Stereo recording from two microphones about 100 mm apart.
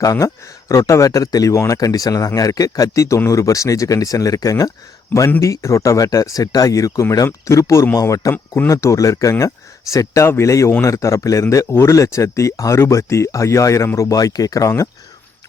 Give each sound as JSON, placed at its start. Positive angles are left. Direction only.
{"t": 0.0, "sound": "speech", "side_deg": 30}